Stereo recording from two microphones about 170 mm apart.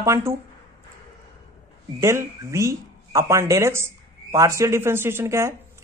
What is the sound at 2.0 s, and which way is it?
Speech, 15° right (ahead or behind).